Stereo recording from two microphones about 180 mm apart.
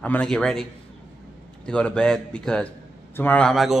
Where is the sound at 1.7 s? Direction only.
5° left (ahead or behind).